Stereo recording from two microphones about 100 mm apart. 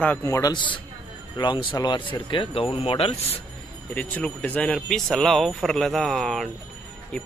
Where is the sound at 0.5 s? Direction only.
55° left (ahead or behind); by 3.1 s 70° left (ahead or behind).